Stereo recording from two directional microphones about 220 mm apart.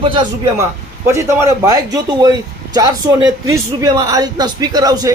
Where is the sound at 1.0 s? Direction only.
10° right (ahead or behind).